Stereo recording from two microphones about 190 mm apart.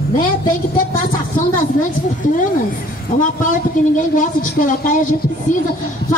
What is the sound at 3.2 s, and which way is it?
A woman's voice, 45° left (ahead or behind).